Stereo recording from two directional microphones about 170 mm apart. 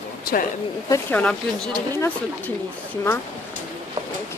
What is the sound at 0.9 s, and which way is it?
Speech, 10° left (ahead or behind).